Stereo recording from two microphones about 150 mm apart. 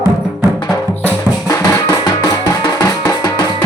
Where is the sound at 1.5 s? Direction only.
20° left (ahead or behind).